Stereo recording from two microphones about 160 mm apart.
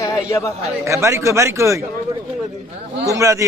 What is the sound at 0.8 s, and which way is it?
A man's voice, 20° right (ahead or behind).